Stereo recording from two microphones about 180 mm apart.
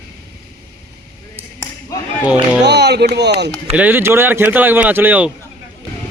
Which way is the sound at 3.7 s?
10° right (ahead or behind).